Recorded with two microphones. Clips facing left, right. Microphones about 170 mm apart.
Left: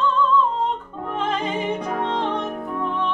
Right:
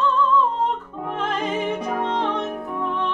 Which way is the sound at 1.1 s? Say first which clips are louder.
Even; 5° right (ahead or behind).